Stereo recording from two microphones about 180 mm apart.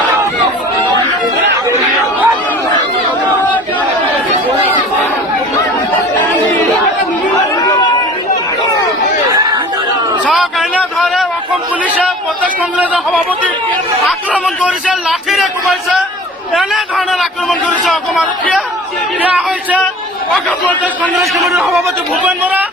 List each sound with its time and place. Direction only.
1.7 s chatter: 15° right (ahead or behind)
7.5 s chatter: 20° left (ahead or behind)
9.3 s chatter: 20° right (ahead or behind)
10.2 s a sound: centre (ahead or behind)
12.7 s a sound: 5° right (ahead or behind)
16.6 s chatter: centre (ahead or behind)
17.8 s a man's voice: centre (ahead or behind)
20.3 s a man's voice: 5° left (ahead or behind)